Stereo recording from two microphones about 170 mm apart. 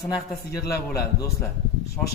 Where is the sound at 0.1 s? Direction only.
20° left (ahead or behind).